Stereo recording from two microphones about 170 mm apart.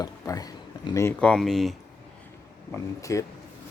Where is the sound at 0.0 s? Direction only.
20° left (ahead or behind).